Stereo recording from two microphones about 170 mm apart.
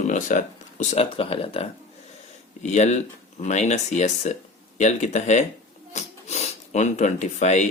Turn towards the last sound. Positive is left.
turn(degrees=45)  # may be behind; listen again after turning